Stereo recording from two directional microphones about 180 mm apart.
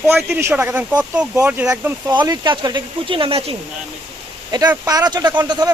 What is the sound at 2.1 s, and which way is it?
A man's voice, 20° right (ahead or behind).